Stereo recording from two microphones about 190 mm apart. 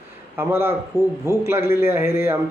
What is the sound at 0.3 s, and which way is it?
A man's voice, 10° right (ahead or behind).